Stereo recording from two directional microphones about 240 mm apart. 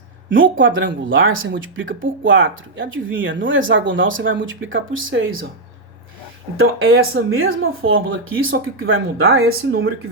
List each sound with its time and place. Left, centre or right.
0.3 s speech: right
6.6 s speech: right